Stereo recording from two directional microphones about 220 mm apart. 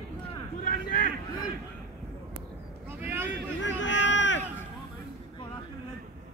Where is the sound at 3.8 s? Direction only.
55° left (ahead or behind).